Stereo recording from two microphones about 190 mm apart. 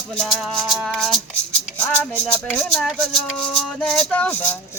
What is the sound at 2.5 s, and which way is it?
Music, 5° left (ahead or behind).